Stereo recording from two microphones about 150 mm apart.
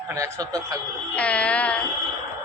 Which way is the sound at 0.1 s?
25° right (ahead or behind).